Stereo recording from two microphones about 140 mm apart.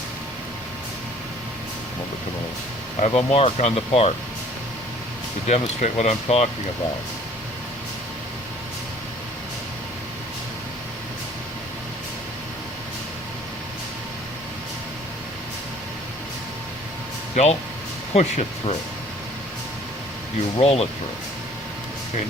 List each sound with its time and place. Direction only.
3.1 s speech: 45° left (ahead or behind)
5.5 s speech: 50° left (ahead or behind)
17.3 s speech: 50° left (ahead or behind)
20.6 s speech: 45° left (ahead or behind)